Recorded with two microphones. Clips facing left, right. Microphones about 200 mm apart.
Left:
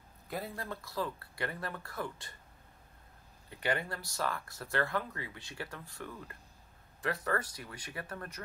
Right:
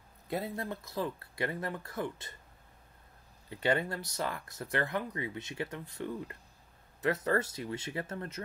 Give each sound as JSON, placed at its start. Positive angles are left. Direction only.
{"t": 0.4, "sound": "speech", "side_deg": -25}
{"t": 3.4, "sound": "speech", "side_deg": -25}